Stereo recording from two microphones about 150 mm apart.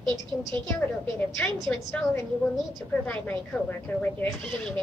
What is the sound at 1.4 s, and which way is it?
A woman's voice, 15° left (ahead or behind).